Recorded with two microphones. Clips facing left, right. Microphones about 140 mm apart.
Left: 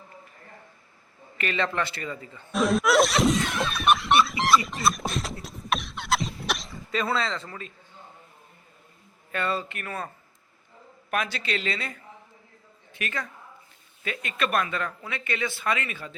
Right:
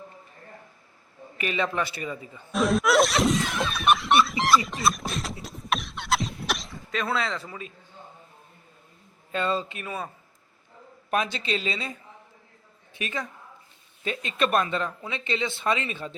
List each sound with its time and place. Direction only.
1.4 s a man's voice: 15° right (ahead or behind)
2.5 s snicker: centre (ahead or behind)
9.3 s a man's voice: 20° right (ahead or behind)
11.1 s speech: 20° right (ahead or behind)